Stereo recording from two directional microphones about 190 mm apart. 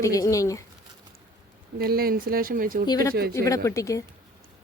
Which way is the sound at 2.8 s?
20° left (ahead or behind).